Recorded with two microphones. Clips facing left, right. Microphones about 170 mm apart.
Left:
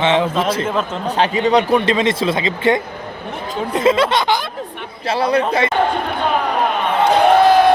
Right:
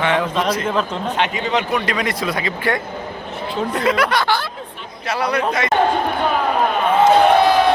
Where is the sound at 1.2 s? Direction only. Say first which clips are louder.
Left 7 dB; 35° left (ahead or behind).